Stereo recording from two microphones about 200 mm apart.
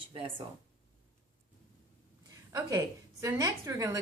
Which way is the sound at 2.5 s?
15° right (ahead or behind).